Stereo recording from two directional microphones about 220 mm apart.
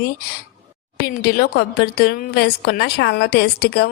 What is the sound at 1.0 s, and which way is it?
A woman's voice, 45° left (ahead or behind).